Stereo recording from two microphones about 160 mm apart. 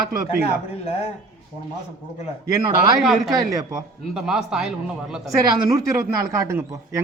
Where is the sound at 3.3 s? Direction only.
20° right (ahead or behind).